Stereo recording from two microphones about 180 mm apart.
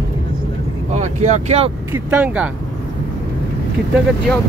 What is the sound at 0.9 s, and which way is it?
Speech, 40° right (ahead or behind).